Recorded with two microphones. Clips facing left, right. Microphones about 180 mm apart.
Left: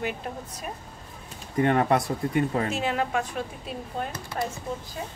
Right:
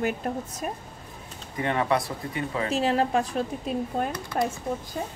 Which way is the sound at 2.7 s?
35° right (ahead or behind).